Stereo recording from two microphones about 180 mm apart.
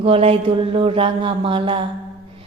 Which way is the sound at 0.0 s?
30° right (ahead or behind).